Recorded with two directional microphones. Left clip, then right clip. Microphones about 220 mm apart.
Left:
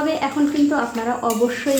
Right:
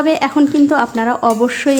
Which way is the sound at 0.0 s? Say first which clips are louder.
Right 7 dB; 40° right (ahead or behind).